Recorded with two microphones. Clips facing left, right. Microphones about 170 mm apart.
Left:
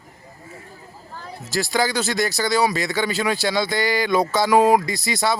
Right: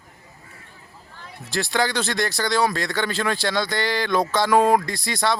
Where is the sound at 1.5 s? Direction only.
5° left (ahead or behind).